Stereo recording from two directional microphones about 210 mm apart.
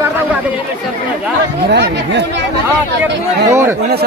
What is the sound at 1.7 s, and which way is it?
Speech, 55° right (ahead or behind).